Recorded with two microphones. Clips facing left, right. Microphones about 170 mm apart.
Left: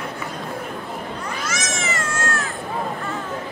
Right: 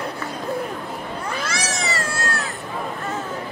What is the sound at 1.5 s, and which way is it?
Cat, 35° right (ahead or behind).